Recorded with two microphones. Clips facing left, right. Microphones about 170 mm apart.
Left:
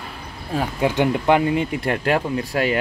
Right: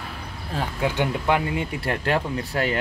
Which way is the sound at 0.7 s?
20° left (ahead or behind).